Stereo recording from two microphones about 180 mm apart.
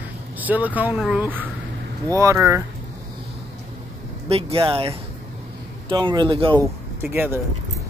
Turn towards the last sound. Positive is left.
turn(degrees=-10)  # may be behind; listen again after turning